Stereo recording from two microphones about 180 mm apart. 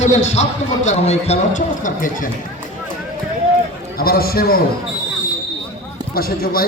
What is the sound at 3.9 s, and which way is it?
Speech, 55° left (ahead or behind).